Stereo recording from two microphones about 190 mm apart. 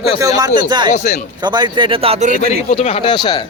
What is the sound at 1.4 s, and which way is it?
A man's voice, 20° right (ahead or behind).